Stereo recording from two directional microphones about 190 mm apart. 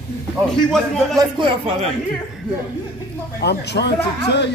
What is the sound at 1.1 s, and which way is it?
Speech, 25° right (ahead or behind).